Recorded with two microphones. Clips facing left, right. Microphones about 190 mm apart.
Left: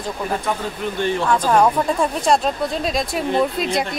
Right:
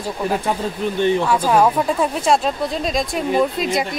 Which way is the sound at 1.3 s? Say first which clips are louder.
Even; 5° right (ahead or behind).